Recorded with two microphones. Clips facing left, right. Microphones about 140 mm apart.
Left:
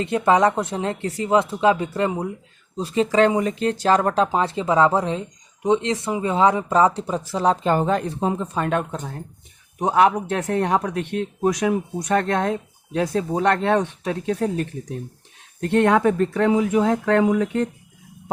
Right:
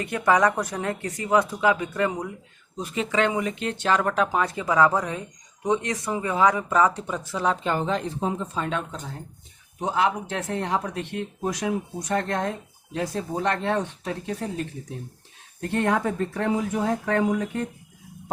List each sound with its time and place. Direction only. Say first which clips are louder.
0.0 s speech: left 4 dB; 25° left (ahead or behind); by 8.1 s 50° left (ahead or behind)
8.2 s speech: left 4 dB; 60° left (ahead or behind); by 17.7 s 90° left